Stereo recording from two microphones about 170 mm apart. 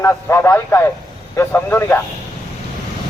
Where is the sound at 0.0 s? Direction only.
15° left (ahead or behind).